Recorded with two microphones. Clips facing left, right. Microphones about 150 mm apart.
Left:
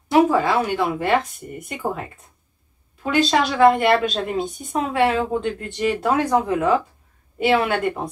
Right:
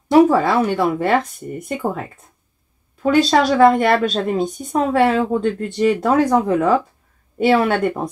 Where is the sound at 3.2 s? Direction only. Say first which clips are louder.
Right 3 dB; 40° right (ahead or behind).